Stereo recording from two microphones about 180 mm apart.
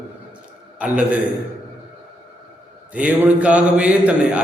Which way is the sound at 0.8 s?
5° right (ahead or behind).